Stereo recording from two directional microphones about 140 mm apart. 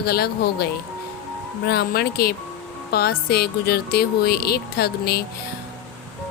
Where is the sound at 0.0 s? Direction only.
90° left.